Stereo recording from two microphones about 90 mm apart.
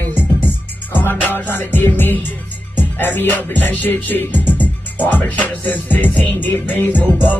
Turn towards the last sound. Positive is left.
turn(degrees=20)  # may be behind; listen again after turning